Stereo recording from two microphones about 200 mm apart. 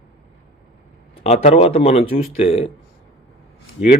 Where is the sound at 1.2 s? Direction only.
30° left (ahead or behind).